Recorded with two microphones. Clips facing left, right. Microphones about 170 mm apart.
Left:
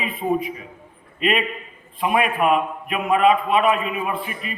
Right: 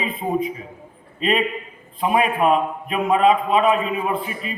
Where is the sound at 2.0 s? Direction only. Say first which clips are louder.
Right 1 dB; 30° right (ahead or behind).